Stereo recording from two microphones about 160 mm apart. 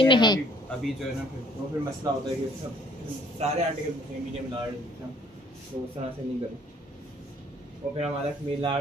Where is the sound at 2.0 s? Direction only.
30° right (ahead or behind).